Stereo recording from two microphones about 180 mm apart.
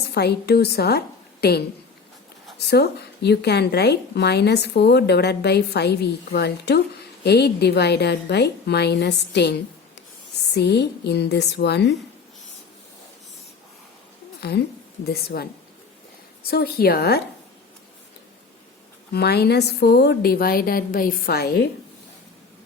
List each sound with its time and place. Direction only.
0.1 s a woman's voice: 65° left (ahead or behind)
2.6 s a woman's voice: 65° left (ahead or behind)
14.4 s speech: 65° left (ahead or behind)
16.5 s speech: 60° left (ahead or behind)
19.1 s speech: 65° left (ahead or behind)